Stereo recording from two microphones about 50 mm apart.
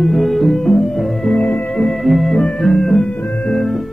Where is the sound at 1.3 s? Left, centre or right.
Left.